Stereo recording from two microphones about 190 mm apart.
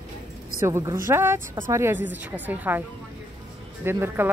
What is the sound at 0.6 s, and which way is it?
A woman's voice, 15° right (ahead or behind).